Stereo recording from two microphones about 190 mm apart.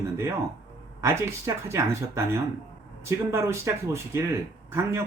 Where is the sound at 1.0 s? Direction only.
15° right (ahead or behind).